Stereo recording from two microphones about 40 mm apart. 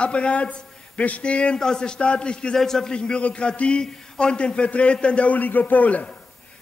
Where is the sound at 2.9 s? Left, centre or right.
Left.